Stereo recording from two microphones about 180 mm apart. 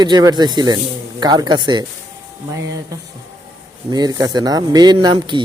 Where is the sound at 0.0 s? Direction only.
20° right (ahead or behind).